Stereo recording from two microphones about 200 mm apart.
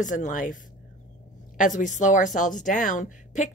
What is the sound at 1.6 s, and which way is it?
Speech, 40° left (ahead or behind).